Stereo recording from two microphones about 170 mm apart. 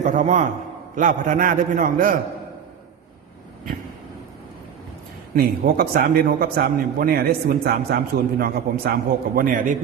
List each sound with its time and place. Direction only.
0.0 s a man's voice: 45° right (ahead or behind)
5.4 s a man's voice: 60° right (ahead or behind)